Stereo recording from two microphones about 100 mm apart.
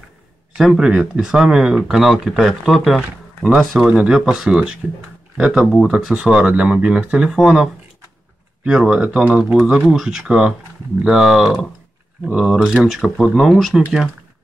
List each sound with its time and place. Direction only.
0.6 s speech: 5° right (ahead or behind)
3.0 s speech: 10° right (ahead or behind)